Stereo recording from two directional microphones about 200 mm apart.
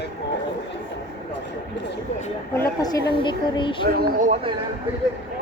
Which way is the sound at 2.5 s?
15° left (ahead or behind).